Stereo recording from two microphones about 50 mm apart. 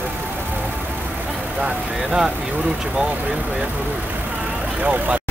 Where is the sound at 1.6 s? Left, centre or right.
Centre.